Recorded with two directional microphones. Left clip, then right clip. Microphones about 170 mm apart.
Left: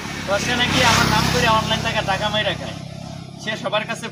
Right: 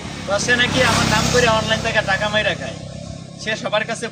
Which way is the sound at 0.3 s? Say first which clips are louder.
Right 3 dB; 10° right (ahead or behind).